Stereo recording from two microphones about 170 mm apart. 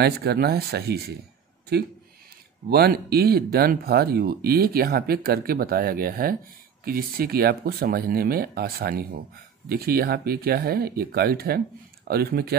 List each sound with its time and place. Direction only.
0.0 s speech: 70° right (ahead or behind)